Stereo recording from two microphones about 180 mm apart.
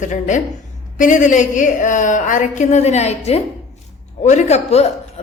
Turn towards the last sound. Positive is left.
turn(degrees=40)  # may be behind; listen again after turning